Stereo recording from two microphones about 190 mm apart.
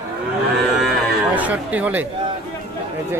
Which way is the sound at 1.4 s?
10° right (ahead or behind).